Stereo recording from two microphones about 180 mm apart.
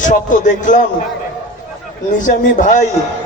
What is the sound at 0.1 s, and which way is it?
Music, 45° left (ahead or behind).